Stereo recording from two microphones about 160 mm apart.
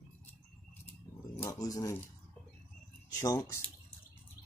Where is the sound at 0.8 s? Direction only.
15° left (ahead or behind).